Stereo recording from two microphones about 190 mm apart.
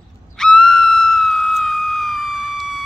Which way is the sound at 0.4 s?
Centre (ahead or behind).